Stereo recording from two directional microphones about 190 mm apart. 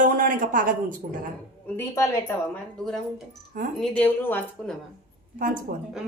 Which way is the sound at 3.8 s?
10° left (ahead or behind).